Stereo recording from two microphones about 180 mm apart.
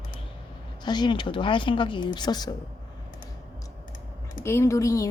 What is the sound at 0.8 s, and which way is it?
A woman's voice, 25° left (ahead or behind).